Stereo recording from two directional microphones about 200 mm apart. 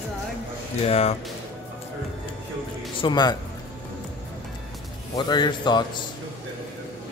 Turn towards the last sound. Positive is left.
turn(degrees=20)  # may be behind; listen again after turning